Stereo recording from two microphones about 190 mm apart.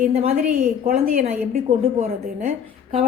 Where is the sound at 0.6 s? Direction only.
50° right (ahead or behind).